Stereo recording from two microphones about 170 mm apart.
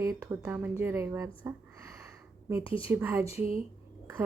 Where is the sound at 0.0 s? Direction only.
20° right (ahead or behind).